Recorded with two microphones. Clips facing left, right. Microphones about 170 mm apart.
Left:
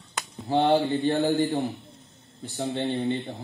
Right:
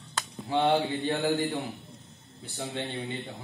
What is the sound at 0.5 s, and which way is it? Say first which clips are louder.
A man's voice: left 4 dB; 35° left (ahead or behind).